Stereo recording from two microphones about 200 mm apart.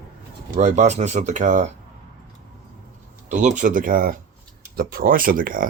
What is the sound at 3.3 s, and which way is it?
Speech, 40° right (ahead or behind).